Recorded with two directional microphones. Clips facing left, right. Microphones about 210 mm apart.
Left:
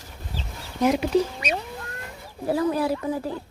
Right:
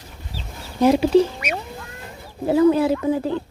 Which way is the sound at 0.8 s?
30° right (ahead or behind).